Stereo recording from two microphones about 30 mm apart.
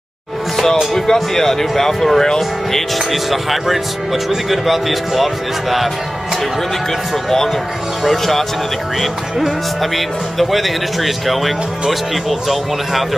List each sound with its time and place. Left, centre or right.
0.9 s speech: centre
3.1 s speech: centre
8.0 s speech: centre
9.9 s speech: centre